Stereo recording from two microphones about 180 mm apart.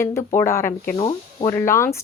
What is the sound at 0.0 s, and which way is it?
Speech, 15° left (ahead or behind).